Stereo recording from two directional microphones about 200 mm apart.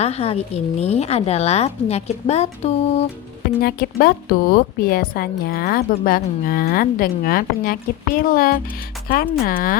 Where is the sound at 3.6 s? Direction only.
50° left (ahead or behind).